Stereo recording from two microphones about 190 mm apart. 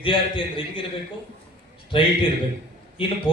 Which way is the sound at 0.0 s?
25° left (ahead or behind).